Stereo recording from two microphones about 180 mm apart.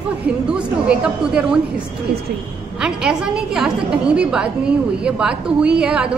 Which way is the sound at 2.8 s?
5° right (ahead or behind).